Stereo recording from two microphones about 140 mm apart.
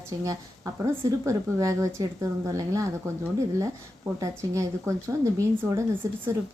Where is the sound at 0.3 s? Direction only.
25° right (ahead or behind).